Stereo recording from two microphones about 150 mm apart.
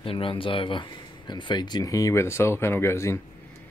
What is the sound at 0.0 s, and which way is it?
Speech, 35° left (ahead or behind).